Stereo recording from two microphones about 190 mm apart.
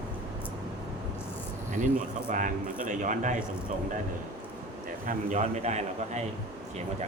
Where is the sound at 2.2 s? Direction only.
45° right (ahead or behind).